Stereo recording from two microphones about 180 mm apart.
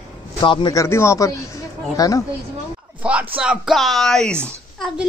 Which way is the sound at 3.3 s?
5° right (ahead or behind).